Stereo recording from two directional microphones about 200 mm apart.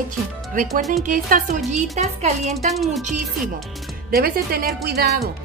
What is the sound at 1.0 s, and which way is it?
Speech, 40° right (ahead or behind).